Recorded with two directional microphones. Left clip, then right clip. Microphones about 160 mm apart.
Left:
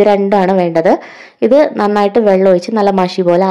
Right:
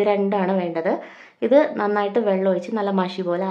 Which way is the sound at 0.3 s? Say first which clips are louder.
Left 11 dB; 45° left (ahead or behind).